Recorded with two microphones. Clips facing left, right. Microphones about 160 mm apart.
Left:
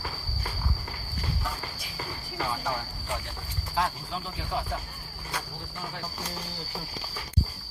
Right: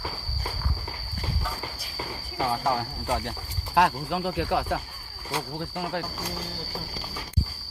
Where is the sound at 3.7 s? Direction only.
70° right (ahead or behind).